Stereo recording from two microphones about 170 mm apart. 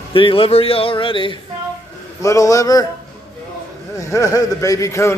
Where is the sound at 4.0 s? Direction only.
20° left (ahead or behind).